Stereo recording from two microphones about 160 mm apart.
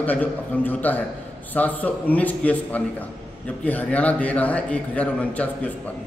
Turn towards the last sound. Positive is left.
turn(degrees=10)  # may be behind; listen again after turning